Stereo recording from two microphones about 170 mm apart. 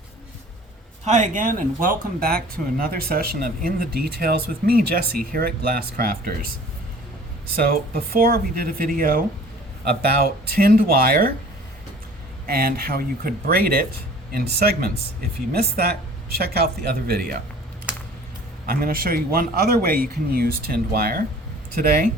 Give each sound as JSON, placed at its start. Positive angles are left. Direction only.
{"t": 1.0, "sound": "speech", "side_deg": -45}
{"t": 7.5, "sound": "speech", "side_deg": -60}
{"t": 9.8, "sound": "speech", "side_deg": -65}
{"t": 12.5, "sound": "speech", "side_deg": -60}
{"t": 18.6, "sound": "speech", "side_deg": -60}